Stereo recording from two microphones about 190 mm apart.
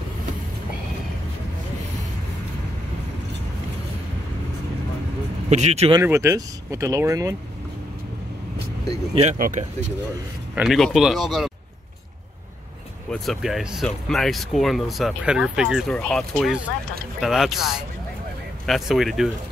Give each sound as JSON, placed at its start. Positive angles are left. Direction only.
{"t": 5.5, "sound": "speech", "side_deg": -35}
{"t": 5.9, "sound": "speech", "side_deg": -15}
{"t": 9.1, "sound": "speech", "side_deg": -40}
{"t": 10.5, "sound": "speech", "side_deg": 0}
{"t": 13.1, "sound": "speech", "side_deg": 0}